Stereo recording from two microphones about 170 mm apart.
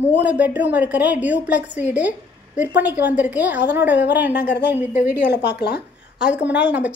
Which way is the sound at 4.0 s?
90° left.